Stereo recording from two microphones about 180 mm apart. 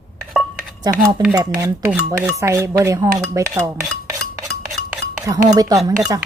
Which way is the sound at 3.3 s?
20° right (ahead or behind).